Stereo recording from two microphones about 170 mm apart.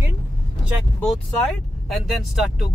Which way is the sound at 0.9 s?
Centre (ahead or behind).